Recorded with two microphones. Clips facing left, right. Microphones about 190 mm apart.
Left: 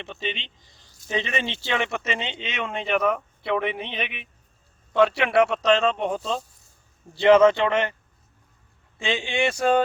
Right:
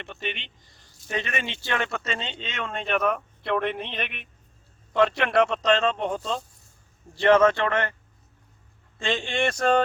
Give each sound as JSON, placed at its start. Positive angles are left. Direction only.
{"t": 0.1, "sound": "speech", "side_deg": 0}
{"t": 1.0, "sound": "a man's voice", "side_deg": 20}
{"t": 9.0, "sound": "a man's voice", "side_deg": 5}